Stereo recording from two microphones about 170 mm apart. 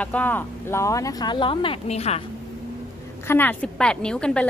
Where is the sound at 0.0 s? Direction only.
10° left (ahead or behind); by 2.2 s 40° left (ahead or behind).